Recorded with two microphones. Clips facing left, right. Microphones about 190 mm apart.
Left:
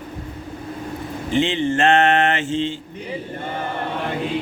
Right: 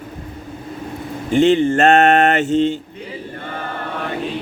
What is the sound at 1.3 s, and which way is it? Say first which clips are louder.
Speech: right 6 dB; 45° right (ahead or behind).